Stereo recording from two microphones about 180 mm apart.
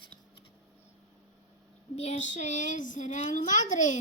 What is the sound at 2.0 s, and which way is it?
A woman's voice, 40° left (ahead or behind).